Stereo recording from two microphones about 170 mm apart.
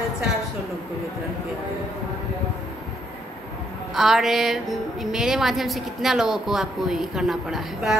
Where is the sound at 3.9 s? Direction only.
Centre (ahead or behind).